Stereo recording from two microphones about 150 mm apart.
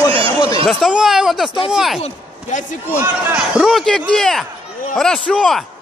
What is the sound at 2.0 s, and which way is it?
Speech, 55° left (ahead or behind).